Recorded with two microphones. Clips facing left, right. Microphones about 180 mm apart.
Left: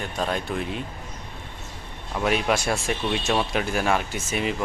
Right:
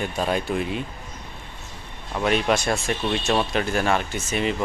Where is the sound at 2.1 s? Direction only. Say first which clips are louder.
Right 2 dB; 5° left (ahead or behind).